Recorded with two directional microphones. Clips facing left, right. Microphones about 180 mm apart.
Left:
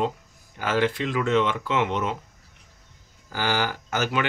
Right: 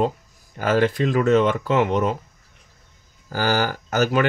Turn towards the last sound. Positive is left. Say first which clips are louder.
# right 6 dB
turn(degrees=-40)  # may be behind; listen again after turning